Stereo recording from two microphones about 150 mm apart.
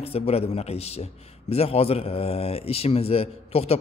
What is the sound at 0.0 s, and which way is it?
A man's voice, 40° left (ahead or behind).